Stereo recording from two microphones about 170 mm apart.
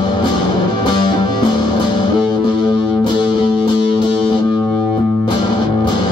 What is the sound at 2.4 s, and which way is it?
Music, 25° left (ahead or behind).